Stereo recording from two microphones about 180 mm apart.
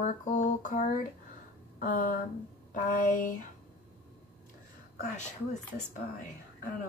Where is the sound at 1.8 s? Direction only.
50° left (ahead or behind).